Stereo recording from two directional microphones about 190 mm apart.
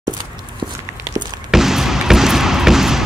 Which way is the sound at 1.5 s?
Centre (ahead or behind).